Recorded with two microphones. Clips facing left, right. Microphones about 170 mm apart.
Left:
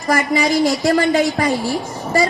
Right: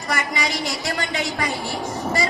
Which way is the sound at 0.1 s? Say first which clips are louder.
Left 9 dB; 45° left (ahead or behind).